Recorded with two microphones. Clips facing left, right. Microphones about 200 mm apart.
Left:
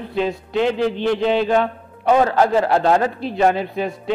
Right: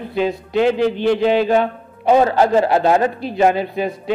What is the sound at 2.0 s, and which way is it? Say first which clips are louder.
A man's voice: right 2 dB; 20° right (ahead or behind).